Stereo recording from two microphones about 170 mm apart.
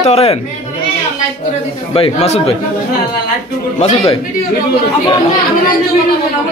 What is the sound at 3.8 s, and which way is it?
Speech, 35° left (ahead or behind).